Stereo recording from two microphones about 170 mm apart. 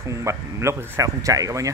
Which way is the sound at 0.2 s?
15° right (ahead or behind).